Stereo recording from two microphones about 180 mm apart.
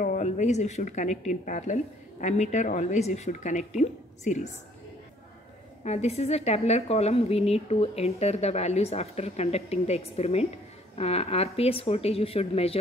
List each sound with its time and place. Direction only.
0.0 s a woman's voice: 45° left (ahead or behind)
5.9 s a woman's voice: 35° left (ahead or behind)